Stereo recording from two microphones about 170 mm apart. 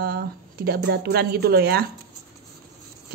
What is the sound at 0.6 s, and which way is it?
Speech, 70° right (ahead or behind).